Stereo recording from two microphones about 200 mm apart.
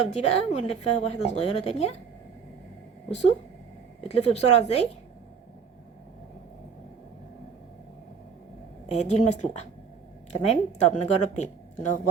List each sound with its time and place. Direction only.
0.0 s a woman's voice: 35° left (ahead or behind)
4.1 s a woman's voice: 30° left (ahead or behind)
8.9 s a woman's voice: 35° left (ahead or behind)